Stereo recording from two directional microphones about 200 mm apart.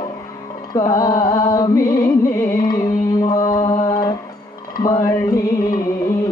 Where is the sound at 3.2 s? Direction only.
20° left (ahead or behind).